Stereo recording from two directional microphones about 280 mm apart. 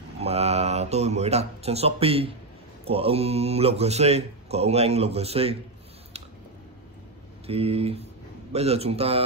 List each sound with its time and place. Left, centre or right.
0.2 s a man's voice: right
7.4 s a man's voice: right